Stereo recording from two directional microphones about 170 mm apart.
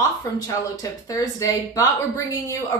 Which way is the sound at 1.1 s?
20° left (ahead or behind).